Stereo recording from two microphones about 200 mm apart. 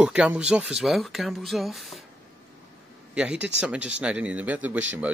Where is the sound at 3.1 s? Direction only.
5° right (ahead or behind).